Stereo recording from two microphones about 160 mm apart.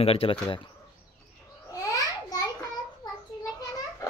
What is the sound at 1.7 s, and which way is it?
Babbling, 20° left (ahead or behind).